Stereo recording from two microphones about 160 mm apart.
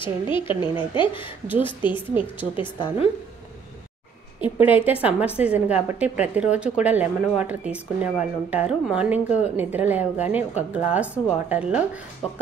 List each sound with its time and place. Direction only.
0.0 s a woman's voice: 30° left (ahead or behind)
2.5 s a woman's voice: 30° left (ahead or behind)
4.4 s a woman's voice: 10° right (ahead or behind)